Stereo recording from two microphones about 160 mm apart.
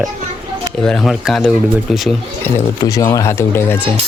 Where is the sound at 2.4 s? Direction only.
20° left (ahead or behind).